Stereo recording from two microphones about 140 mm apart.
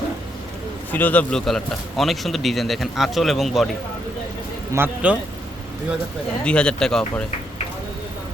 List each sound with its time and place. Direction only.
0.9 s a man's voice: 10° left (ahead or behind)
4.7 s a man's voice: 15° right (ahead or behind)
6.4 s speech: 5° left (ahead or behind)